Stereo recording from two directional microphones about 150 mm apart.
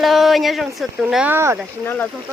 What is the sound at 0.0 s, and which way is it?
Speech, centre (ahead or behind).